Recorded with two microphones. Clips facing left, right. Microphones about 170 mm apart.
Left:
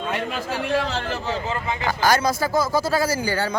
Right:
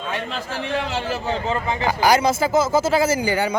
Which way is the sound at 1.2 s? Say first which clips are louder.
Right 3 dB; 20° right (ahead or behind).